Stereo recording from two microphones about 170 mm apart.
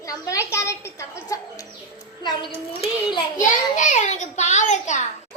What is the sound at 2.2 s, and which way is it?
Speech, 25° left (ahead or behind).